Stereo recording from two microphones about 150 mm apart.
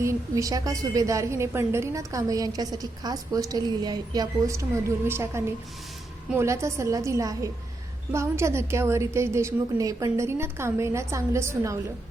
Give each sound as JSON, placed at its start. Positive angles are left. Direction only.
{"t": 0.0, "sound": "a woman's voice", "side_deg": -20}